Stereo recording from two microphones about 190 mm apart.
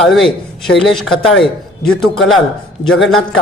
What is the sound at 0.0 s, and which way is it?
Speech, centre (ahead or behind).